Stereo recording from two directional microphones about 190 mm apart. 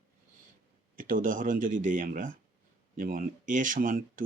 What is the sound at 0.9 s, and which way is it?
Speech, 45° right (ahead or behind).